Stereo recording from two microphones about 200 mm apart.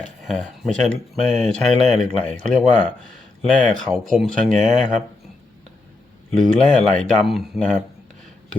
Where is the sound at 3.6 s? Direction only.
40° right (ahead or behind).